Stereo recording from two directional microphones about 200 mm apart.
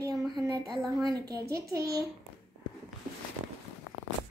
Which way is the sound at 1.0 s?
20° right (ahead or behind).